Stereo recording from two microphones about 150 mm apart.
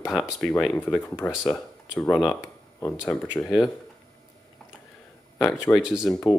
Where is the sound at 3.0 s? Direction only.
10° left (ahead or behind).